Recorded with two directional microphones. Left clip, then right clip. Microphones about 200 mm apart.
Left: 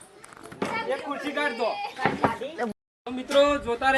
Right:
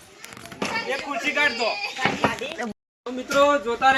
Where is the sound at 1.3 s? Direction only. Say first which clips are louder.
Right 5 dB; 5° right (ahead or behind).